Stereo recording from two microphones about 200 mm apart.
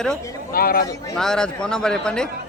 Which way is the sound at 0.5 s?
45° left (ahead or behind).